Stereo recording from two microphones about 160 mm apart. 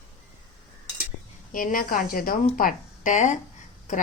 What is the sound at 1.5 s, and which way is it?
A woman's voice, 60° left (ahead or behind).